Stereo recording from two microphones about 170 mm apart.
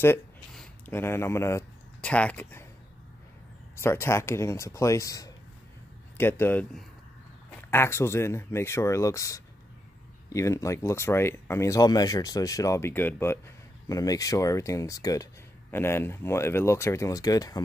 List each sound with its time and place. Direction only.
0.6 s speech: 10° left (ahead or behind)
3.7 s speech: 15° left (ahead or behind)